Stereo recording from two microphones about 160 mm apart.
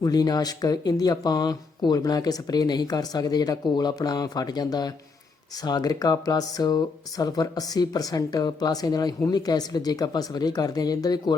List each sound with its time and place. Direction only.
0.0 s speech: 25° left (ahead or behind)